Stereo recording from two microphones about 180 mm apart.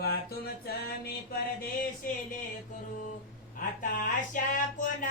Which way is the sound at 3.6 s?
50° left (ahead or behind).